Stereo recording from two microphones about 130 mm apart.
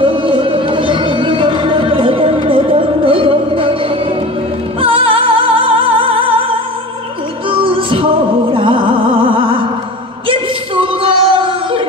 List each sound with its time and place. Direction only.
0.0 s music: 40° right (ahead or behind)
4.7 s music: 45° right (ahead or behind)
7.4 s music: 40° right (ahead or behind)
10.2 s a sound: 40° right (ahead or behind)